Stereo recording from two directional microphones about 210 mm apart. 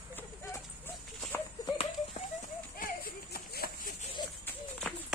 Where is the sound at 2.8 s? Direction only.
45° left (ahead or behind).